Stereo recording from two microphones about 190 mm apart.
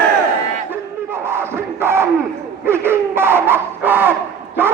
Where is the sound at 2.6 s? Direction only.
10° right (ahead or behind).